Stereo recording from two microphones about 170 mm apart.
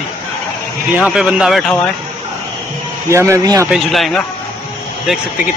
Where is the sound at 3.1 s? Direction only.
15° right (ahead or behind).